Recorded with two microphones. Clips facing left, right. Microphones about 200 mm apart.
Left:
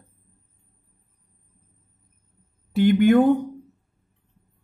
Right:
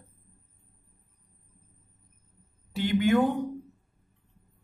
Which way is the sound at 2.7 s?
55° left (ahead or behind).